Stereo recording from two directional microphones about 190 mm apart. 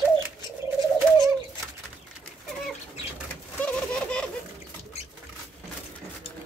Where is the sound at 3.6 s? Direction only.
5° left (ahead or behind).